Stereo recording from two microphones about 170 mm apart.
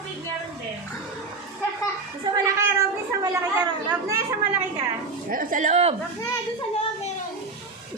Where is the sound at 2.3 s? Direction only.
20° right (ahead or behind).